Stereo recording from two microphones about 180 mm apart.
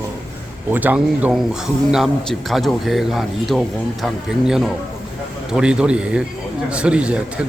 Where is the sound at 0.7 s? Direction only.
10° right (ahead or behind).